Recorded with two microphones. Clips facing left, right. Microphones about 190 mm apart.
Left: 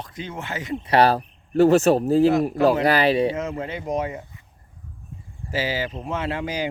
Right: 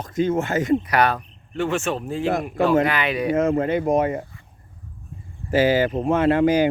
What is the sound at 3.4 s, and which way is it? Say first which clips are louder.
Speech: right 9 dB; 55° right (ahead or behind).